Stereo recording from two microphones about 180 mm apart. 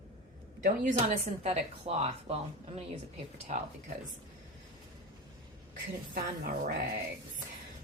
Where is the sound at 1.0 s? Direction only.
40° right (ahead or behind).